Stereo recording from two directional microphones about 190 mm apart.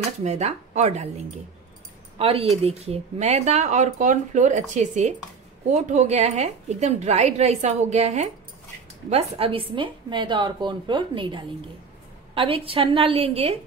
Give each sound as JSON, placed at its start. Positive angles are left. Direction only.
{"t": 0.2, "sound": "a woman's voice", "side_deg": -35}